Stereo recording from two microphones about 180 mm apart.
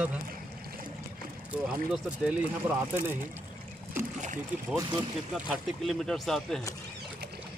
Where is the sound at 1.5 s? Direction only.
5° right (ahead or behind).